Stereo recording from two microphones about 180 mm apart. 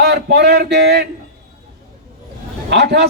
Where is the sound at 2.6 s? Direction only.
70° right (ahead or behind).